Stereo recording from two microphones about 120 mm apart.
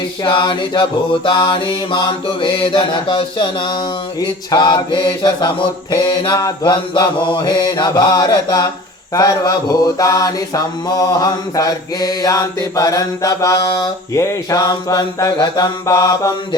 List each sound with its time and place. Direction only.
0.3 s mantra: 40° left (ahead or behind)